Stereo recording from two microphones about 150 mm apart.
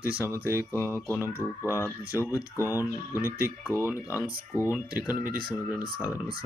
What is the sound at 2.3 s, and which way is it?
Speech, 20° left (ahead or behind).